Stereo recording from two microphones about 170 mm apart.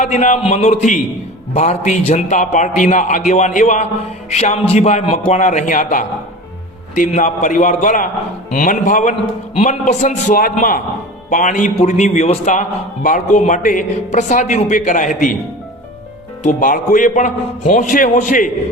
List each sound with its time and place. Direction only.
0.0 s a man's voice: 45° left (ahead or behind)
16.4 s a man's voice: 50° left (ahead or behind)